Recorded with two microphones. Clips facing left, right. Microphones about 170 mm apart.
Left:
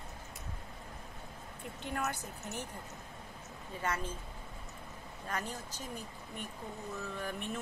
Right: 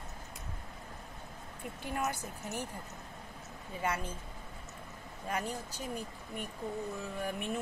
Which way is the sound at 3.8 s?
10° right (ahead or behind).